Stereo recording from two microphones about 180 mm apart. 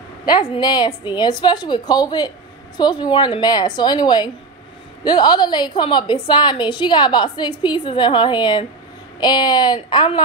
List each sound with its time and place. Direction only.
0.2 s a woman's voice: 25° left (ahead or behind)